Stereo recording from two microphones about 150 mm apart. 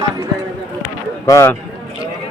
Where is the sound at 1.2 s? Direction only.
20° left (ahead or behind).